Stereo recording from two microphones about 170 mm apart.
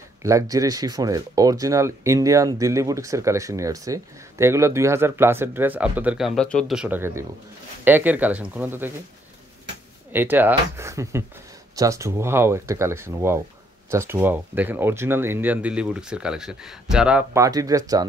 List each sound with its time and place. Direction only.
0.2 s speech: 20° right (ahead or behind); by 6.8 s 5° left (ahead or behind)
6.8 s speech: 10° right (ahead or behind)
10.1 s speech: 10° right (ahead or behind)
17.3 s speech: 20° right (ahead or behind)